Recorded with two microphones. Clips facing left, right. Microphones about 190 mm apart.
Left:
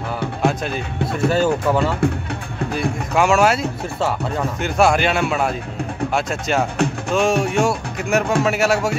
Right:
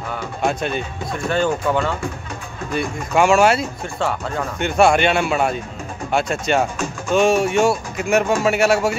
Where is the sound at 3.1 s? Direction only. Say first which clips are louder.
Right 2 dB; centre (ahead or behind).